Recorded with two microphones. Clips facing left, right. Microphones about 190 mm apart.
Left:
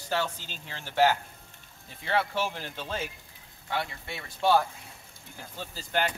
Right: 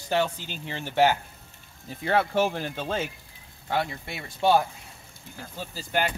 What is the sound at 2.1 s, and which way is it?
Speech, 45° right (ahead or behind).